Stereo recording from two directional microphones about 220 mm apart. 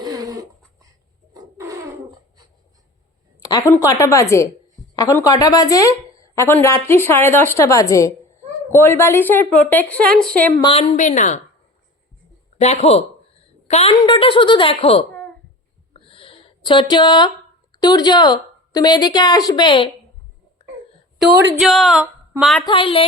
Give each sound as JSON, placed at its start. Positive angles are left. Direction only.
{"t": 0.0, "sound": "a sound", "side_deg": -15}
{"t": 3.7, "sound": "a woman's voice", "side_deg": 15}
{"t": 10.6, "sound": "a woman's voice", "side_deg": 25}
{"t": 12.5, "sound": "a woman's voice", "side_deg": 30}
{"t": 15.9, "sound": "a sound", "side_deg": 25}
{"t": 17.7, "sound": "a woman's voice", "side_deg": 20}
{"t": 21.6, "sound": "speech", "side_deg": 0}
{"t": 22.6, "sound": "a woman's voice", "side_deg": 25}